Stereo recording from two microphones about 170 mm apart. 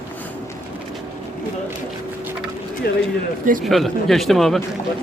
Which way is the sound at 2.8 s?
65° left (ahead or behind).